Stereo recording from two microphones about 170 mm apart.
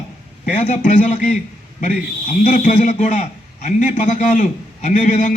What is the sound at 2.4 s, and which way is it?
A man's voice, 45° left (ahead or behind).